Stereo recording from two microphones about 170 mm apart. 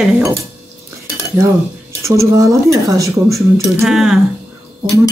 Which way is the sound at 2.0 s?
15° right (ahead or behind).